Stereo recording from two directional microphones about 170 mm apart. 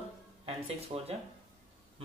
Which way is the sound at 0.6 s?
35° right (ahead or behind).